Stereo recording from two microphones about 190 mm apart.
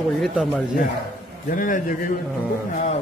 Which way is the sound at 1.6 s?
45° left (ahead or behind).